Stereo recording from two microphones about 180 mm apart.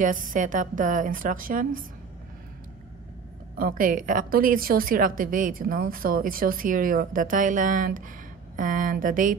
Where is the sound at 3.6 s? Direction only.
50° right (ahead or behind).